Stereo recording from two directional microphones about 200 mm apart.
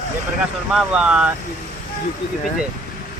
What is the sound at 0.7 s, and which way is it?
Speech, 5° right (ahead or behind).